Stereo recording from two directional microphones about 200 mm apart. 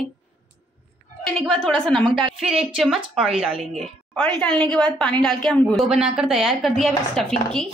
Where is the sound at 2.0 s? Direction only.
25° right (ahead or behind).